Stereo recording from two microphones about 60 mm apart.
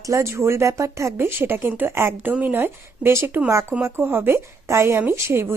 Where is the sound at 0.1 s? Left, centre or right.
Right.